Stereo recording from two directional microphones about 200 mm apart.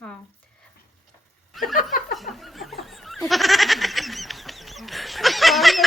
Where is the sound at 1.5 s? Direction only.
Centre (ahead or behind).